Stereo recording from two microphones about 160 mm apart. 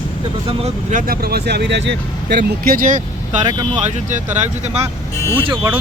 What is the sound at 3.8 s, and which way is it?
Speech, 50° right (ahead or behind).